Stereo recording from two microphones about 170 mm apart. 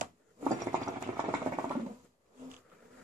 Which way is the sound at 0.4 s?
15° right (ahead or behind).